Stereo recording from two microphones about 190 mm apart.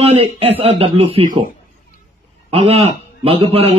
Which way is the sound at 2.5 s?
30° right (ahead or behind).